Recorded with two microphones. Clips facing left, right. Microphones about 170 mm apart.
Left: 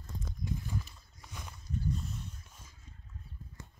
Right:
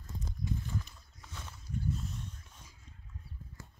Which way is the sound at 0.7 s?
10° left (ahead or behind).